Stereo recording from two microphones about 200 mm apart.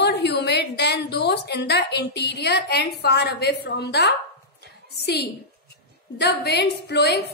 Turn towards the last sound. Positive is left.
turn(degrees=55)  # may be behind; listen again after turning